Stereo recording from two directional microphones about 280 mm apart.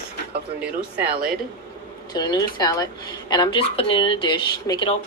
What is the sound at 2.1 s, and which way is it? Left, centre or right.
Speech, centre.